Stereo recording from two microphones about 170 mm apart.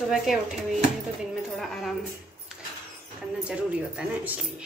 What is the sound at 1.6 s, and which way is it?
Speech, centre (ahead or behind).